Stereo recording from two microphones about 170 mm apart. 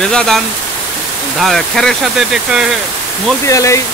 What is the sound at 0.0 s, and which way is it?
Speech, 5° left (ahead or behind).